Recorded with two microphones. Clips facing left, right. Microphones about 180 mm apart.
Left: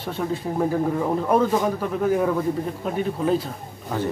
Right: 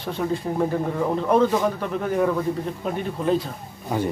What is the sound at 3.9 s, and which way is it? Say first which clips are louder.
Speech: right 2 dB; 15° right (ahead or behind).